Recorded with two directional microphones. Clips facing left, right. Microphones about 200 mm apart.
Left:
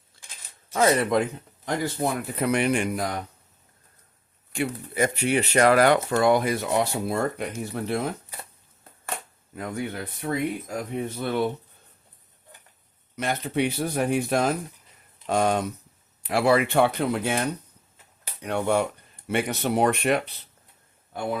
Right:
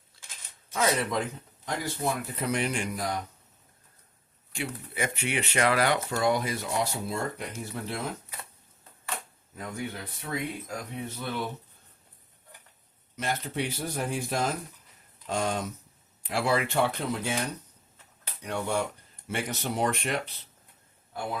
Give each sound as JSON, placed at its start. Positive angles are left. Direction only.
{"t": 0.7, "sound": "speech", "side_deg": 50}
{"t": 1.6, "sound": "speech", "side_deg": 60}
{"t": 4.9, "sound": "speech", "side_deg": 40}
{"t": 9.6, "sound": "speech", "side_deg": 60}
{"t": 13.1, "sound": "speech", "side_deg": 60}
{"t": 18.4, "sound": "speech", "side_deg": 60}